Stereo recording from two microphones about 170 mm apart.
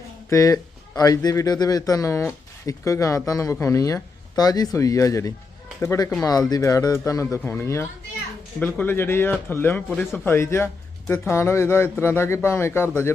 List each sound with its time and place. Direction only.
0.3 s speech: 20° left (ahead or behind)